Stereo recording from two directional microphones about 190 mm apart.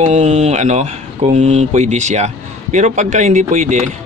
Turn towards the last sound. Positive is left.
turn(degrees=-40)  # may be behind; listen again after turning